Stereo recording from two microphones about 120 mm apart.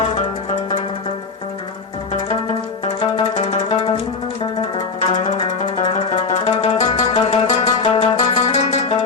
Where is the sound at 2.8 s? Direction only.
45° left (ahead or behind).